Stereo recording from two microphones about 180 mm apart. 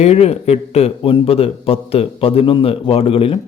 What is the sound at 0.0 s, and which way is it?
A man's voice, 35° left (ahead or behind).